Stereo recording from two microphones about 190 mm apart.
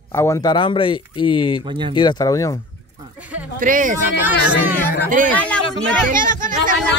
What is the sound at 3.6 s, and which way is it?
Speech, 45° right (ahead or behind).